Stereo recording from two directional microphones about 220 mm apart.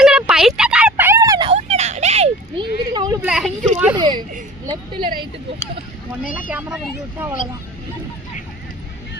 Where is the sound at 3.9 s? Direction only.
20° right (ahead or behind).